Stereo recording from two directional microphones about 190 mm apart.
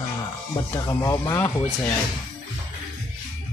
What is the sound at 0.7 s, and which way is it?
Speech, 15° left (ahead or behind).